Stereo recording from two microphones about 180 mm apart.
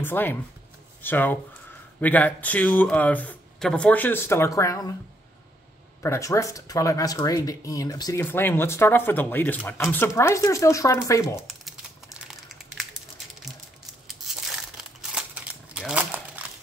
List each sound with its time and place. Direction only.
0.0 s speech: 10° left (ahead or behind)
6.0 s speech: 15° left (ahead or behind)
12.3 s a sound: centre (ahead or behind)
14.0 s crumpling: centre (ahead or behind)